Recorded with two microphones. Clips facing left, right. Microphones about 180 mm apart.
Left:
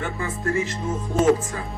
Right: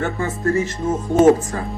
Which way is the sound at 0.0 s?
40° right (ahead or behind).